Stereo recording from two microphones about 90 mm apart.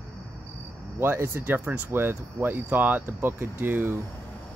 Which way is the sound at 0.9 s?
25° right (ahead or behind).